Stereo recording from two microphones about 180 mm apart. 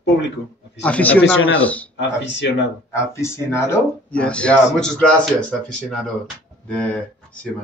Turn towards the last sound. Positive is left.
turn(degrees=5)  # may be behind; listen again after turning